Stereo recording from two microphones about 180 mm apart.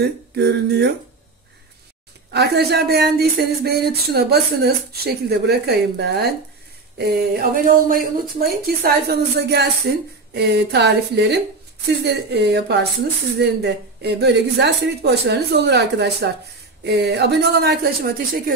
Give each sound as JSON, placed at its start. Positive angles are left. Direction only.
{"t": 0.0, "sound": "a woman's voice", "side_deg": -65}
{"t": 2.3, "sound": "a woman's voice", "side_deg": -65}